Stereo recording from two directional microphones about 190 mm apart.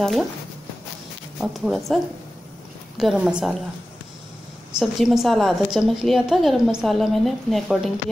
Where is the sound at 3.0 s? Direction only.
Centre (ahead or behind).